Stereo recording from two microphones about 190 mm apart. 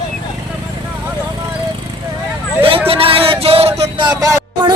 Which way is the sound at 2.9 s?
30° right (ahead or behind).